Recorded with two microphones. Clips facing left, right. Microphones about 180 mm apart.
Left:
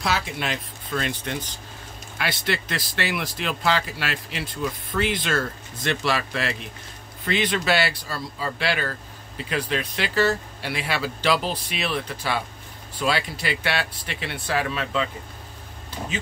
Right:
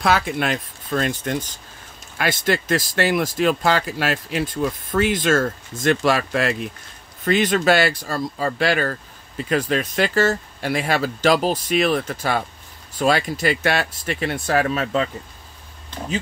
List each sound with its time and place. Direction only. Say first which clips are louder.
0.0 s speech: right 6 dB; 50° right (ahead or behind)